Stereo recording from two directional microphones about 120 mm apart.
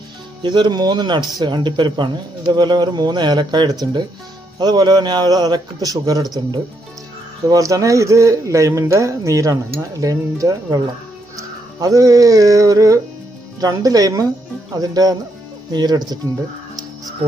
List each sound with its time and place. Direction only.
0.4 s speech: 40° right (ahead or behind)
7.4 s a man's voice: 30° right (ahead or behind)
11.3 s music: 30° right (ahead or behind)
13.6 s speech: 30° right (ahead or behind)